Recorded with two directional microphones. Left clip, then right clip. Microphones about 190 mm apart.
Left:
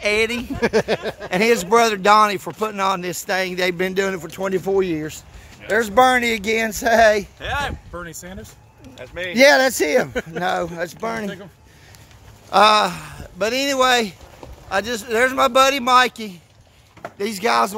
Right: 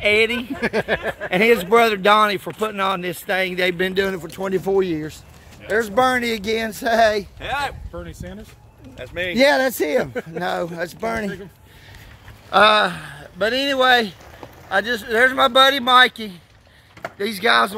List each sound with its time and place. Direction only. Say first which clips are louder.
0.0 s speech: right 2 dB; 5° right (ahead or behind)
0.6 s speech: left 4 dB; 55° left (ahead or behind)
1.3 s speech: right 1 dB; 5° right (ahead or behind)
5.7 s speech: left 3 dB; 35° left (ahead or behind)
7.3 s speech: even; 10° right (ahead or behind)
7.9 s speech: left 2 dB; 50° left (ahead or behind)
8.9 s speech: right 3 dB; 50° right (ahead or behind)
9.3 s speech: left 3 dB; 5° left (ahead or behind); by 11.2 s 10° right (ahead or behind)
12.4 s speech: even; 15° left (ahead or behind)
17.2 s speech: right 1 dB; 20° left (ahead or behind)